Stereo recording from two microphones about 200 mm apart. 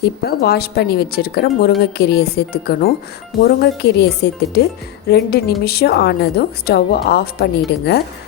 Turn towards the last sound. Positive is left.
turn(degrees=50)  # may be behind; listen again after turning